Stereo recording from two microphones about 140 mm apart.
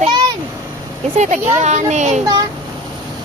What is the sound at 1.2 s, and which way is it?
A woman's voice, 55° right (ahead or behind).